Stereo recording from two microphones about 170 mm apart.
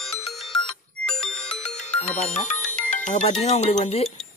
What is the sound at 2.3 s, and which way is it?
Speech, 45° left (ahead or behind).